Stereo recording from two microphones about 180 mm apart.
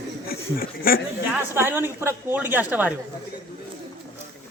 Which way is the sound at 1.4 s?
10° right (ahead or behind).